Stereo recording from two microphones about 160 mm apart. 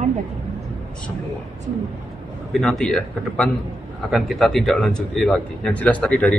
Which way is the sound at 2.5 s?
5° left (ahead or behind).